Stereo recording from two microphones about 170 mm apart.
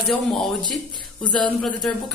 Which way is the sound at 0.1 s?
5° left (ahead or behind).